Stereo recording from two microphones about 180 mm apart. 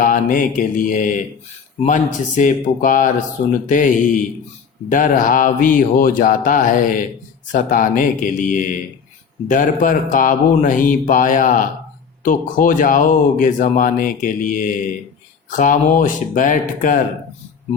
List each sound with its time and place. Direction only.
0.0 s speech: 50° left (ahead or behind)